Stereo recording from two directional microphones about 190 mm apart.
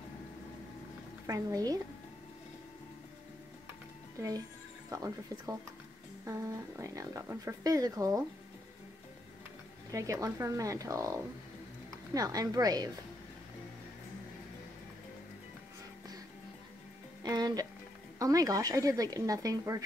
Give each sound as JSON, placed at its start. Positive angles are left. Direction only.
{"t": 1.2, "sound": "speech", "side_deg": -15}
{"t": 4.8, "sound": "speech", "side_deg": -15}
{"t": 6.2, "sound": "speech", "side_deg": -15}
{"t": 9.8, "sound": "speech", "side_deg": -15}
{"t": 17.2, "sound": "speech", "side_deg": -20}